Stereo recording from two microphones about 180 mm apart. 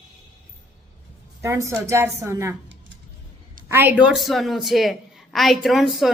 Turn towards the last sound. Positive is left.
turn(degrees=0)  # may be behind; listen again after turning